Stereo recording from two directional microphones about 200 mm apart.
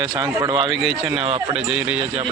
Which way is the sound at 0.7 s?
Centre (ahead or behind).